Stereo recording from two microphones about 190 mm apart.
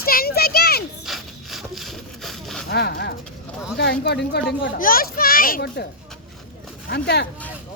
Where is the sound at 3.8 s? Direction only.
60° left (ahead or behind).